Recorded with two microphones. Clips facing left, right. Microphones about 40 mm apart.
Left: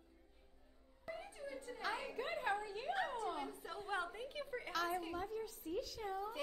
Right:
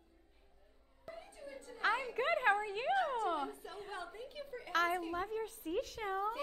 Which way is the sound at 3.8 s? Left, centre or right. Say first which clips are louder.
Left 5 dB; left.